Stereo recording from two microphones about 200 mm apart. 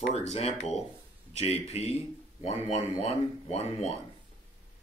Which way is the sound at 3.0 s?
30° left (ahead or behind).